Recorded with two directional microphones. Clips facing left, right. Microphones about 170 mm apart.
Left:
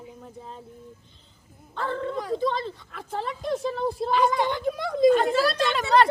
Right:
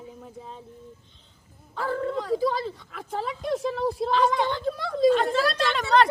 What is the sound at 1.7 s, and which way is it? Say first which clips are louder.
Speech: right 1 dB; 5° right (ahead or behind).